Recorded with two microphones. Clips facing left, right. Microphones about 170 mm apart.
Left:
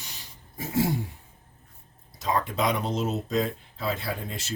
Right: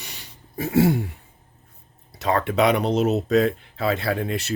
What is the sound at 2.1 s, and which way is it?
Speech, 70° right (ahead or behind).